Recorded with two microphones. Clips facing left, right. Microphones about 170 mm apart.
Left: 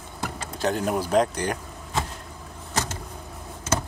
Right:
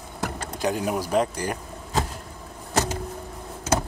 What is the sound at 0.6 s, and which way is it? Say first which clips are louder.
Speech: left 1 dB; 10° right (ahead or behind).